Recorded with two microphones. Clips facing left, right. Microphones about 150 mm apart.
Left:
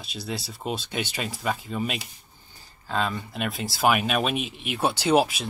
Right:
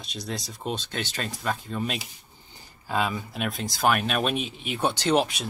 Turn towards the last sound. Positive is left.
turn(degrees=5)  # may be behind; listen again after turning